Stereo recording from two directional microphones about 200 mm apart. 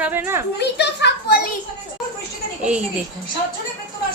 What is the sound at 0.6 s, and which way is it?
Speech, 55° left (ahead or behind).